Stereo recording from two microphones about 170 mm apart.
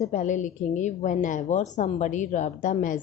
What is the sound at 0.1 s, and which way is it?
A woman's voice, 45° left (ahead or behind).